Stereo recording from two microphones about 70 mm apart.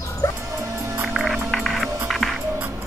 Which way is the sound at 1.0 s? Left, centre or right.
Centre.